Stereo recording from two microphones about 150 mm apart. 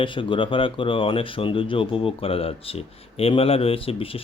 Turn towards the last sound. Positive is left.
turn(degrees=40)  # may be behind; listen again after turning